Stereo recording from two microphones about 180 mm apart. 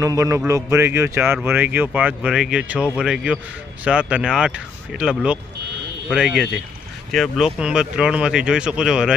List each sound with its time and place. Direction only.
0.0 s speech: 15° right (ahead or behind)